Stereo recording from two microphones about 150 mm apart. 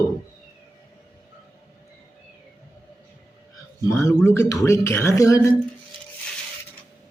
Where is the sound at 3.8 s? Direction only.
20° left (ahead or behind).